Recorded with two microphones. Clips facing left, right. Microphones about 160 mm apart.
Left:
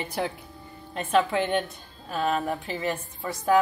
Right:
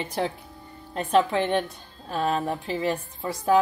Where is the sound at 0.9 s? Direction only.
30° right (ahead or behind).